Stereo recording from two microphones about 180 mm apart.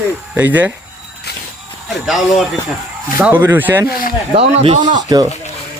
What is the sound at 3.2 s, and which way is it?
Speech, 10° right (ahead or behind).